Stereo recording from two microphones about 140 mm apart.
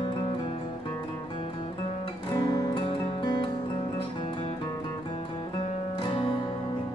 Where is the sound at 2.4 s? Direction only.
25° left (ahead or behind).